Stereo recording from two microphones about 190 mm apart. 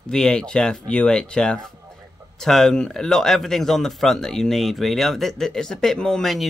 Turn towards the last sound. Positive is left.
turn(degrees=0)  # may be behind; listen again after turning